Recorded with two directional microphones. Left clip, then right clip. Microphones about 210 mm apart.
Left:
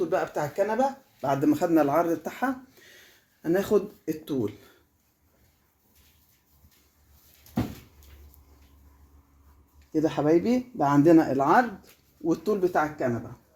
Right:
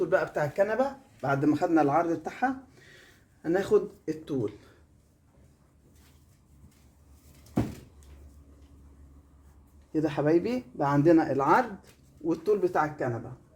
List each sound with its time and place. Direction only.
0.0 s speech: 35° left (ahead or behind)
9.9 s speech: 35° left (ahead or behind)